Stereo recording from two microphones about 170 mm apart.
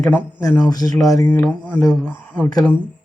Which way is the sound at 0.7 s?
25° left (ahead or behind).